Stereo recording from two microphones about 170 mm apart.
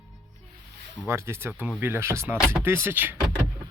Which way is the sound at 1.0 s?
15° right (ahead or behind).